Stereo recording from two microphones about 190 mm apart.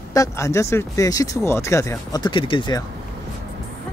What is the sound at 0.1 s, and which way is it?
Speech, 15° left (ahead or behind).